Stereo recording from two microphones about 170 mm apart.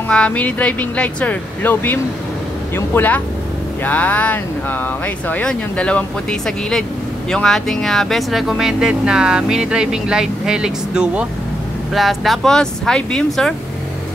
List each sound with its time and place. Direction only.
0.1 s speech: 5° left (ahead or behind)